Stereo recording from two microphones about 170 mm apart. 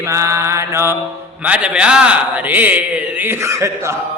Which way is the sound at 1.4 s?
10° right (ahead or behind).